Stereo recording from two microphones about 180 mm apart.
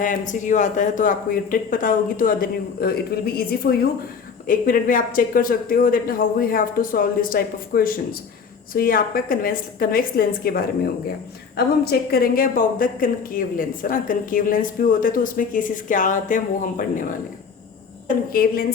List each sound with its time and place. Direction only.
0.0 s a woman's voice: 45° left (ahead or behind)
18.3 s a woman's voice: 55° left (ahead or behind)